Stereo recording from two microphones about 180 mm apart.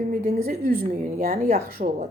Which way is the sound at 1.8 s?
45° right (ahead or behind).